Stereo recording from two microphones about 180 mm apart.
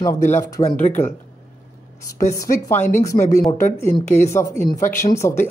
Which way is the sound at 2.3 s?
15° left (ahead or behind).